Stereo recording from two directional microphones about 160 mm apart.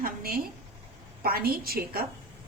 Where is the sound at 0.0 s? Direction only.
70° right (ahead or behind).